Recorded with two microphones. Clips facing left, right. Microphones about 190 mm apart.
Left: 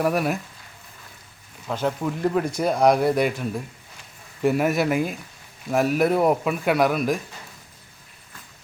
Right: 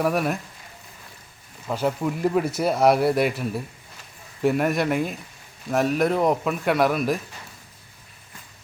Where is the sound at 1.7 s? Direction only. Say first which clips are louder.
Right 1 dB; 5° right (ahead or behind).